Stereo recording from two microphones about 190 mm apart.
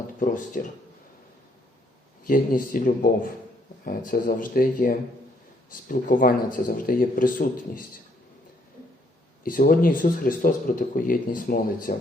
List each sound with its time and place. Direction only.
0.2 s speech: 45° left (ahead or behind)
2.2 s speech: 45° left (ahead or behind)
9.4 s speech: 45° left (ahead or behind)